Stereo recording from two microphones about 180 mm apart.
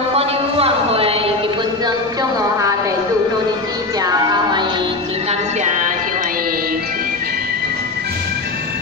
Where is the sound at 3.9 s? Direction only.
20° right (ahead or behind).